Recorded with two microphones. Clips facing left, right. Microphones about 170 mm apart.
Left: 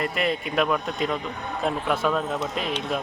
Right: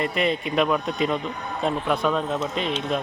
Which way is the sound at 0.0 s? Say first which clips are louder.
Right 2 dB; centre (ahead or behind).